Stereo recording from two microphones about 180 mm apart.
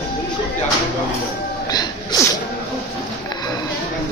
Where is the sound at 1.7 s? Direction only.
20° left (ahead or behind).